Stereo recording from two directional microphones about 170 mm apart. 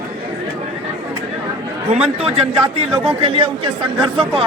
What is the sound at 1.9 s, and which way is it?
Speech, 35° right (ahead or behind).